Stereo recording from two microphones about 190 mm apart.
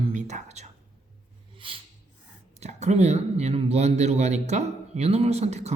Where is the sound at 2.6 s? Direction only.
35° right (ahead or behind).